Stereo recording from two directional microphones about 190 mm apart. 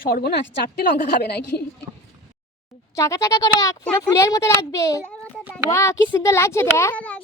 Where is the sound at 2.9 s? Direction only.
15° left (ahead or behind).